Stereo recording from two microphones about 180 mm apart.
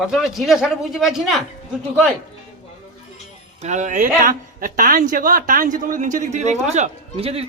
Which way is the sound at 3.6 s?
40° right (ahead or behind).